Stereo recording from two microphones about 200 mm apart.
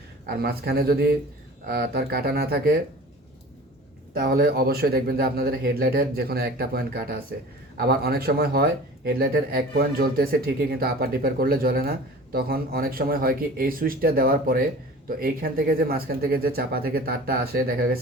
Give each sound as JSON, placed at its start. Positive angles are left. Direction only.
{"t": 0.3, "sound": "speech", "side_deg": -50}
{"t": 4.1, "sound": "speech", "side_deg": -50}